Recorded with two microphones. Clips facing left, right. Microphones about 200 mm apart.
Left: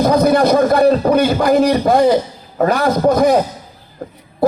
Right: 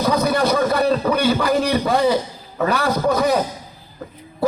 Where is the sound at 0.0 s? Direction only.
50° left (ahead or behind).